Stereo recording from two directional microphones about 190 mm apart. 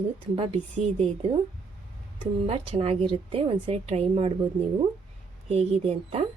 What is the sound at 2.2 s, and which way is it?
Speech, 30° right (ahead or behind).